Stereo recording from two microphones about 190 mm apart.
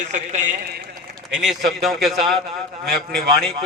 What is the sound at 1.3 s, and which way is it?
A man's voice, centre (ahead or behind).